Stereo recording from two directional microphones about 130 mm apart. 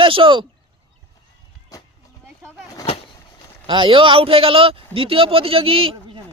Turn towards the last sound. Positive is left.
turn(degrees=-45)  # may be behind; listen again after turning